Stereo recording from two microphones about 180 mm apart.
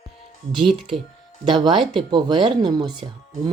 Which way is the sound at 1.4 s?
25° right (ahead or behind).